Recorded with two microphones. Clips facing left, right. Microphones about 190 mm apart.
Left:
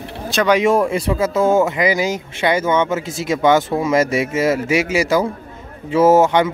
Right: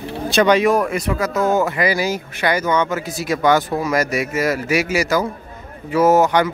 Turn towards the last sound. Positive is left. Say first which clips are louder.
# left 2 dB
turn(degrees=25)  # may be behind; listen again after turning